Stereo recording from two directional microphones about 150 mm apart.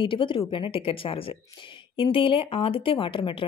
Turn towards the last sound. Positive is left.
turn(degrees=35)  # may be behind; listen again after turning